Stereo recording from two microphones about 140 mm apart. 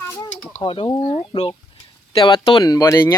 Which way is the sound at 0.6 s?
40° left (ahead or behind).